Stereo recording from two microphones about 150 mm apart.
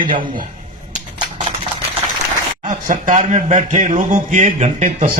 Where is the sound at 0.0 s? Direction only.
30° right (ahead or behind).